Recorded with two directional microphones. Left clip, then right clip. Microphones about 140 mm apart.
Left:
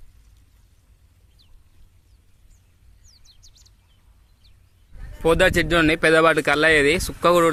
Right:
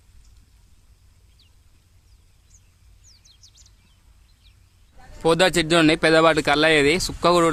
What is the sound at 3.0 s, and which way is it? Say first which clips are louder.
Bird: right 1 dB; 5° right (ahead or behind).